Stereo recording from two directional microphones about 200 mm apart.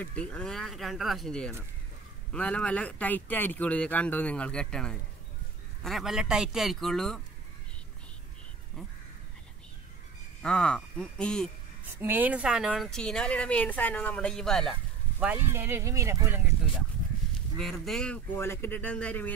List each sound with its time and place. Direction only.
0.0 s speech: 5° left (ahead or behind)
10.4 s speech: 5° left (ahead or behind)
11.9 s speech: 10° right (ahead or behind)
17.6 s speech: centre (ahead or behind)